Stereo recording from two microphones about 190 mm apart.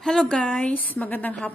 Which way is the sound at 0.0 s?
5° left (ahead or behind).